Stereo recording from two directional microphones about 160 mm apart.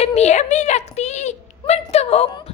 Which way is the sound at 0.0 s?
45° left (ahead or behind).